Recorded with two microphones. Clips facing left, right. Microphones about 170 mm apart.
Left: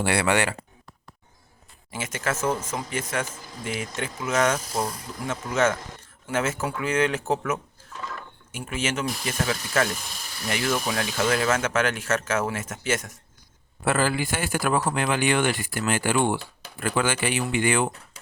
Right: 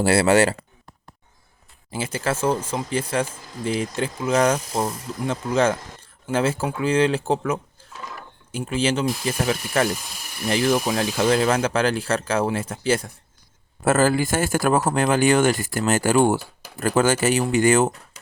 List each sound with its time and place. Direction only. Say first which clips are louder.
0.0 s speech: right 6 dB; 35° right (ahead or behind)
1.9 s speech: right 4 dB; 30° right (ahead or behind)
13.8 s speech: right 5 dB; 45° right (ahead or behind)